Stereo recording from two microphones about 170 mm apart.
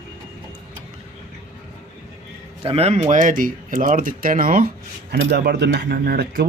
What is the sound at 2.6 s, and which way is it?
Speech, 35° right (ahead or behind).